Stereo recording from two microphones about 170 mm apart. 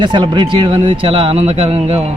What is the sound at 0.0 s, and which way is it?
Speech, 25° right (ahead or behind).